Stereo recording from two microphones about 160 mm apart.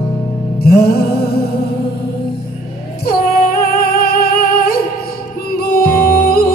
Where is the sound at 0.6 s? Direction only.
70° left (ahead or behind).